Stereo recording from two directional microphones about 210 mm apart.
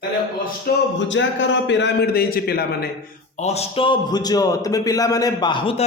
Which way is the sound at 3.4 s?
30° left (ahead or behind).